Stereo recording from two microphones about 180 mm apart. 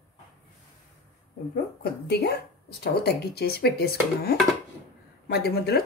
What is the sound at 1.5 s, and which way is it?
Speech, 60° left (ahead or behind).